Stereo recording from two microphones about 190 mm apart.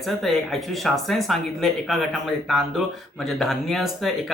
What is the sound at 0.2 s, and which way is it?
Speech, centre (ahead or behind).